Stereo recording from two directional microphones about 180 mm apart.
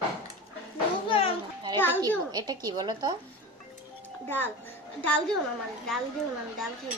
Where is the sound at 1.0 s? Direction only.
30° left (ahead or behind).